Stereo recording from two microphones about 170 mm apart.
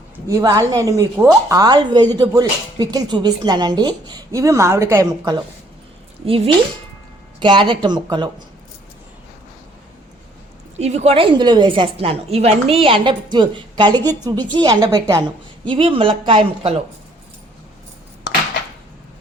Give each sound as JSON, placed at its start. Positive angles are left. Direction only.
{"t": 0.3, "sound": "speech", "side_deg": -20}
{"t": 6.2, "sound": "a woman's voice", "side_deg": -35}
{"t": 10.8, "sound": "a woman's voice", "side_deg": -40}
{"t": 15.7, "sound": "a woman's voice", "side_deg": -30}